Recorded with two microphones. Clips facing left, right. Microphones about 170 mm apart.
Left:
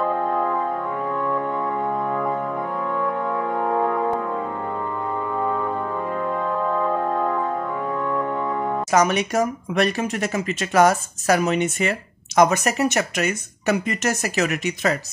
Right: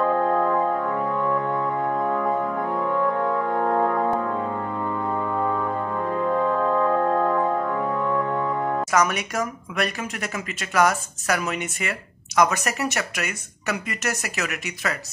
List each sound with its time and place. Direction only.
0.0 s music: 5° left (ahead or behind)
3.5 s brass instrument: 5° left (ahead or behind)
6.7 s music: 5° left (ahead or behind)
8.9 s speech: 25° left (ahead or behind)